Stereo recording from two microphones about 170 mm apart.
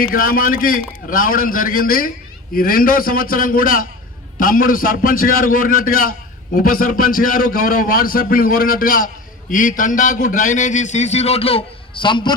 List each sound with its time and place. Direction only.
0.0 s a man's voice: 55° left (ahead or behind); by 12.3 s 30° left (ahead or behind)